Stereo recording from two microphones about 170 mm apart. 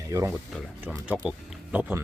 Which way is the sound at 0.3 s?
Centre (ahead or behind).